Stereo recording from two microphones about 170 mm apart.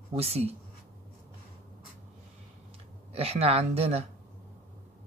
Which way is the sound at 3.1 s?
35° right (ahead or behind).